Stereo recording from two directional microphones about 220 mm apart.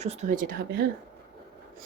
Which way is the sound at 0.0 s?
30° right (ahead or behind).